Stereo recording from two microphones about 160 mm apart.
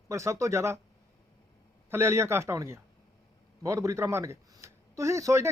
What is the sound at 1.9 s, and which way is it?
Speech, 15° right (ahead or behind).